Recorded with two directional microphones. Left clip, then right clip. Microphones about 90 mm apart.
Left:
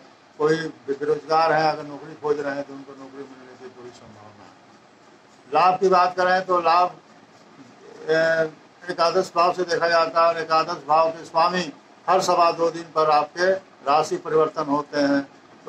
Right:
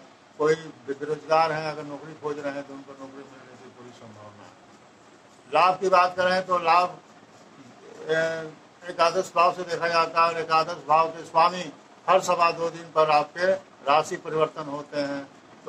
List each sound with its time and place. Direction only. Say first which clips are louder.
0.4 s a man's voice: left 2 dB; 30° left (ahead or behind)
5.5 s speech: left 3 dB; 25° left (ahead or behind)
8.0 s speech: left 6 dB; 30° left (ahead or behind)